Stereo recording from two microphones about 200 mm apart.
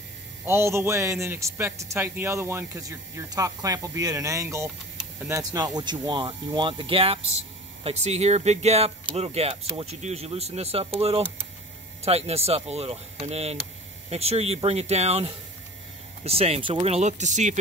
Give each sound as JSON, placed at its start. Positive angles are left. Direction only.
{"t": 0.5, "sound": "a man's voice", "side_deg": -15}